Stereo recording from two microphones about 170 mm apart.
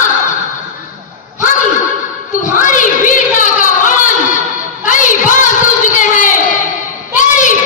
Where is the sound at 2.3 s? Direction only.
50° left (ahead or behind).